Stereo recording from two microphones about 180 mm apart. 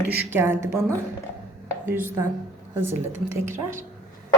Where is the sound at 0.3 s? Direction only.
15° right (ahead or behind).